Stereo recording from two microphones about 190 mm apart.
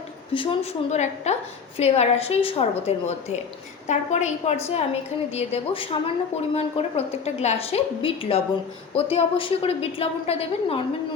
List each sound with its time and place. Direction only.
0.3 s a woman's voice: 30° left (ahead or behind)